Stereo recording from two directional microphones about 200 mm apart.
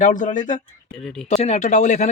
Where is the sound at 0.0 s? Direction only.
40° left (ahead or behind).